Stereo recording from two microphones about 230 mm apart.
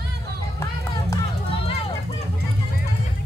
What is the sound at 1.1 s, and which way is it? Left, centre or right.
Run, left.